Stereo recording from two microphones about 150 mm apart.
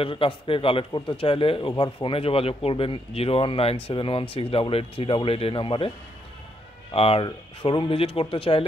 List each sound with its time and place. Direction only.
0.0 s a man's voice: 35° left (ahead or behind)
6.9 s a man's voice: 40° left (ahead or behind)